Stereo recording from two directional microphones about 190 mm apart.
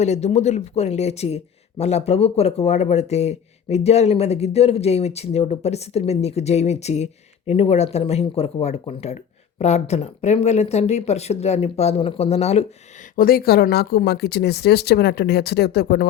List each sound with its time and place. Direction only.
0.0 s speech: 35° left (ahead or behind)
13.1 s speech: 50° left (ahead or behind)